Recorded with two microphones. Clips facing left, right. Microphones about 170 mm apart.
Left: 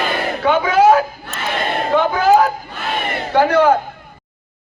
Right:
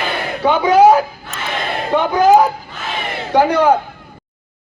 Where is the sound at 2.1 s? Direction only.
20° right (ahead or behind).